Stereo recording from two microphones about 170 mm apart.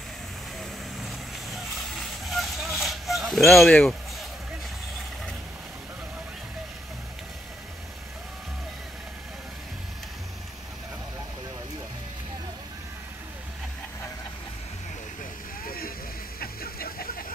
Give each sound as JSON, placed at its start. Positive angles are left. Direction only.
{"t": 0.6, "sound": "vehicle", "side_deg": 0}
{"t": 15.6, "sound": "vehicle", "side_deg": 60}
{"t": 16.3, "sound": "a sound", "side_deg": 60}